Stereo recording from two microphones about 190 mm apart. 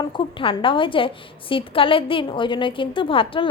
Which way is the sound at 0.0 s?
25° left (ahead or behind).